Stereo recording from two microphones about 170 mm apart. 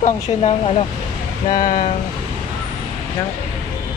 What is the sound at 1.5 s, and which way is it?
Speech, 50° left (ahead or behind).